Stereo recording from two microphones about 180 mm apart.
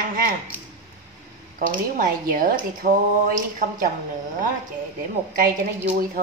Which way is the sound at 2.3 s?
50° right (ahead or behind).